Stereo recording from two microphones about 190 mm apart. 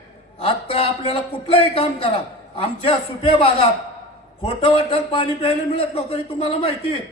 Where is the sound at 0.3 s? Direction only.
30° left (ahead or behind).